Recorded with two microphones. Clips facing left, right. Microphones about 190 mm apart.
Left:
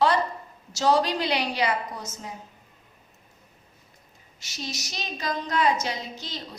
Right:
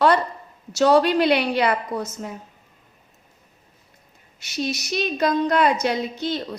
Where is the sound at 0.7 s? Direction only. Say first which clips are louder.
Right 6 dB; 60° right (ahead or behind).